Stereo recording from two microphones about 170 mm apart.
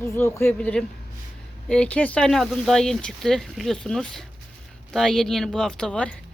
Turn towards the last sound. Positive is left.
turn(degrees=5)  # may be behind; listen again after turning